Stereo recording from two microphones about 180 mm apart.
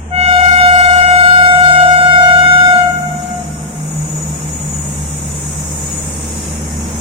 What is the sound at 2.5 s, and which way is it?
Music, 30° right (ahead or behind).